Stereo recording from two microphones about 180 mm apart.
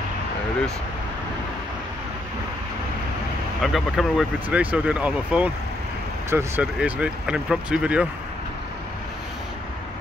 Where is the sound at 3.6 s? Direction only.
Centre (ahead or behind).